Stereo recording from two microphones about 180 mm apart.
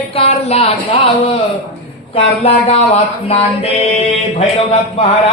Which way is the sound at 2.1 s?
35° left (ahead or behind).